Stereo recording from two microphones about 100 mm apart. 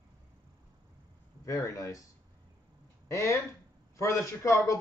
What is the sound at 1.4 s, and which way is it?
Speech, 35° left (ahead or behind).